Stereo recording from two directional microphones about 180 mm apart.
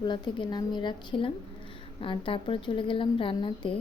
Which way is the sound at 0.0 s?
25° left (ahead or behind).